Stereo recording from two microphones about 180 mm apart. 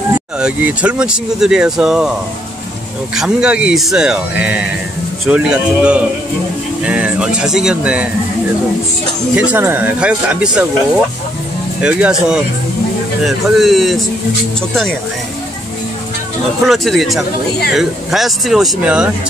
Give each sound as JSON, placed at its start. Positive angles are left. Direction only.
{"t": 0.4, "sound": "speech", "side_deg": -5}
{"t": 3.2, "sound": "speech", "side_deg": -5}
{"t": 9.3, "sound": "speech", "side_deg": -5}
{"t": 11.8, "sound": "speech", "side_deg": -5}
{"t": 16.6, "sound": "speech", "side_deg": 0}